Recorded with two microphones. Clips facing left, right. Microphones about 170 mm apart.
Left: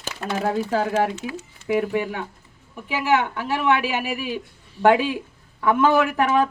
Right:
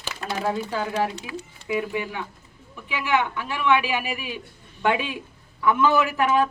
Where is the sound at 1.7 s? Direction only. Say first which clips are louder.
Left 5 dB; 50° left (ahead or behind).